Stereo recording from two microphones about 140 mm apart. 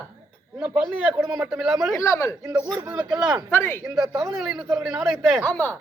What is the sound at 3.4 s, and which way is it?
Speech, 15° left (ahead or behind).